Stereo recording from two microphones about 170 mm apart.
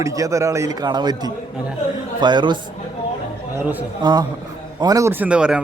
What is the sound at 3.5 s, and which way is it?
Speech, 10° right (ahead or behind).